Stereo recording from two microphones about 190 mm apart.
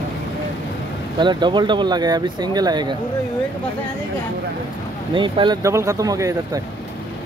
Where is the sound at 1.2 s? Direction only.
25° right (ahead or behind).